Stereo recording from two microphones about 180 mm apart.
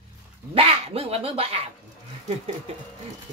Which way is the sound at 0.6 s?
35° right (ahead or behind).